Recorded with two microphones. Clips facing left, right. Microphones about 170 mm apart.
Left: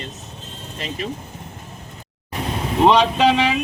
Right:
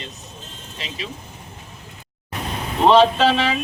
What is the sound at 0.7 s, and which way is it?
Speech, 50° left (ahead or behind).